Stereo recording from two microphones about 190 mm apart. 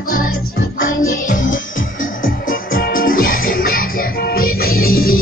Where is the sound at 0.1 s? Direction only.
50° left (ahead or behind).